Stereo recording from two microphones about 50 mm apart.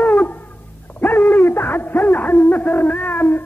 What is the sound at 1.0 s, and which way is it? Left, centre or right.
Hoot, left.